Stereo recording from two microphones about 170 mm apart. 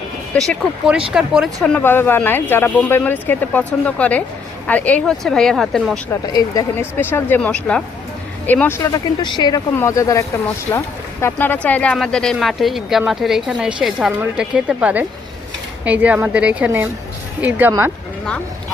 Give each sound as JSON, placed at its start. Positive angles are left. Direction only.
{"t": 0.3, "sound": "speech", "side_deg": 0}
{"t": 1.6, "sound": "speech", "side_deg": 10}
{"t": 6.1, "sound": "speech", "side_deg": 20}
{"t": 8.8, "sound": "a woman's voice", "side_deg": 25}